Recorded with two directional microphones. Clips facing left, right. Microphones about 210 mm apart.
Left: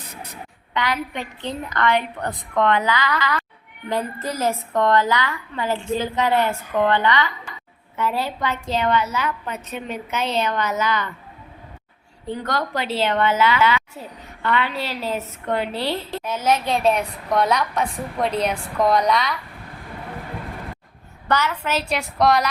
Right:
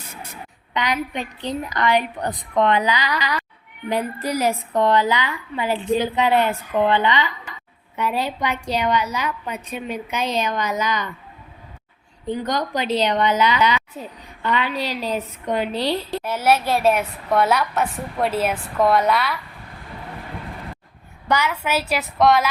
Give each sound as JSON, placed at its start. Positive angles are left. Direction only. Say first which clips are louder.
{"t": 0.7, "sound": "a woman's voice", "louder": "right 1 dB", "side_deg": -15}
{"t": 12.3, "sound": "a woman's voice", "louder": "right 2 dB", "side_deg": -15}
{"t": 21.2, "sound": "a woman's voice", "louder": "right 1 dB", "side_deg": -10}